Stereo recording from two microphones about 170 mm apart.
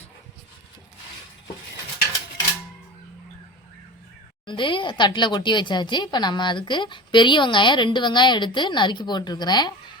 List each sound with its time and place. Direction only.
4.4 s speech: 30° left (ahead or behind)